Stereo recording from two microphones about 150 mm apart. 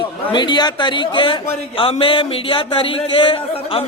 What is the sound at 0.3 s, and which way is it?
A man's voice, 30° left (ahead or behind).